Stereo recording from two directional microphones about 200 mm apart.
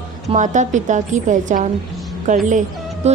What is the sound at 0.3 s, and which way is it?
Speech, 40° right (ahead or behind).